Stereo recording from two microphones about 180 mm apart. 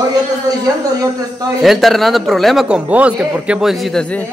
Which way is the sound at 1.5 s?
Centre (ahead or behind).